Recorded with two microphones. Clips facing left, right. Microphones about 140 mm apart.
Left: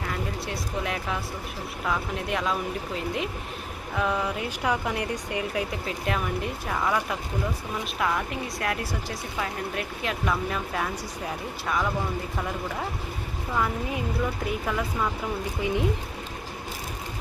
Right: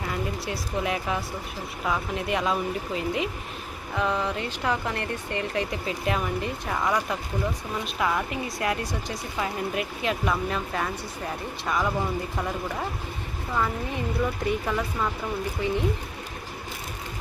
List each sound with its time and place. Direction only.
0.1 s speech: centre (ahead or behind)
13.5 s speech: 5° left (ahead or behind)
15.6 s speech: 15° left (ahead or behind)